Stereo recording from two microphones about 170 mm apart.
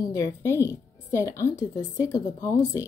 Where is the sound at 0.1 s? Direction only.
15° left (ahead or behind).